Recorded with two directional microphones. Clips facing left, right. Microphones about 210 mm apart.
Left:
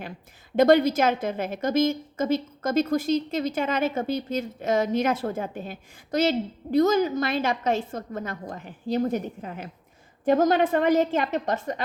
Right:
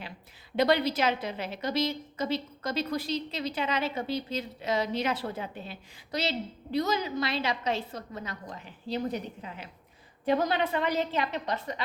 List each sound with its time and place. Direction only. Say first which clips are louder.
0.5 s a woman's voice: left 7 dB; 45° left (ahead or behind)